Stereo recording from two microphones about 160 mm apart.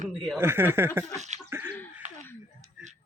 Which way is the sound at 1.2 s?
45° right (ahead or behind).